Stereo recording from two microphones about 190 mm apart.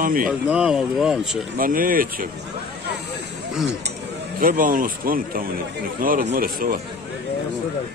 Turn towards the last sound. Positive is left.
turn(degrees=-50)  # may be behind; listen again after turning